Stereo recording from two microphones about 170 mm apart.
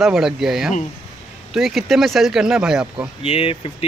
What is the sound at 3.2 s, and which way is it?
Speech, 35° left (ahead or behind).